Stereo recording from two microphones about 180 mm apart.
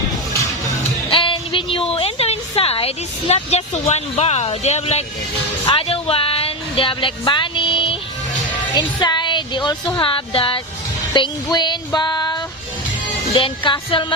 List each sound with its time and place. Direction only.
1.1 s a sound: 30° left (ahead or behind)
8.7 s speech: 25° left (ahead or behind)
11.1 s music: 25° left (ahead or behind)